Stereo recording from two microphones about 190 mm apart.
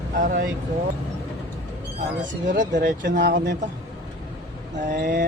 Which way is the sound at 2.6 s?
70° right (ahead or behind).